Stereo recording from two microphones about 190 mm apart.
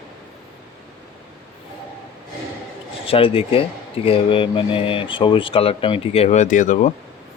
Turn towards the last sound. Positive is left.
turn(degrees=40)  # may be behind; listen again after turning